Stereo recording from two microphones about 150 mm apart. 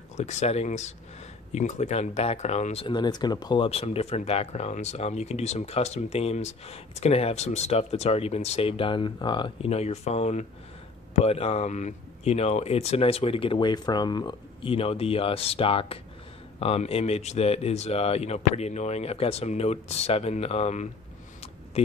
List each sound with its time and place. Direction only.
0.2 s speech: 45° left (ahead or behind)